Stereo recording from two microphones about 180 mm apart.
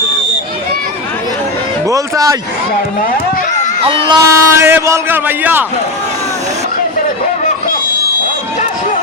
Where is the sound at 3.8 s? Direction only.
30° right (ahead or behind).